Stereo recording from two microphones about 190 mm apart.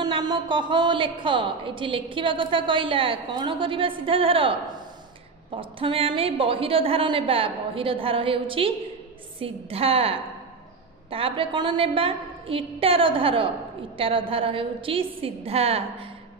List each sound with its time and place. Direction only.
0.0 s a woman's voice: 20° right (ahead or behind)